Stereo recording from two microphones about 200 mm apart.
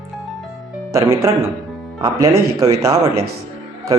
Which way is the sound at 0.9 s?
15° right (ahead or behind).